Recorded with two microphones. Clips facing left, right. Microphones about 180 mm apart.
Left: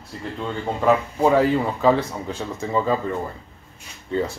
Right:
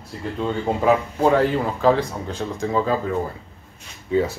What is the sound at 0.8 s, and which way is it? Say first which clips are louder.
Speech: left 1 dB; centre (ahead or behind).